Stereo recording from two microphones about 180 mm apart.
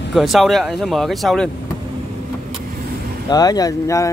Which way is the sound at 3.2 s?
20° left (ahead or behind).